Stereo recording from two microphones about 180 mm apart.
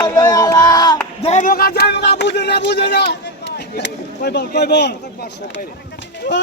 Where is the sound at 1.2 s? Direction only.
45° left (ahead or behind); by 4.9 s 70° left (ahead or behind).